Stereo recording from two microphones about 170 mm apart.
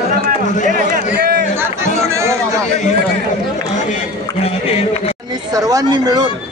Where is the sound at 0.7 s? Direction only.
55° right (ahead or behind).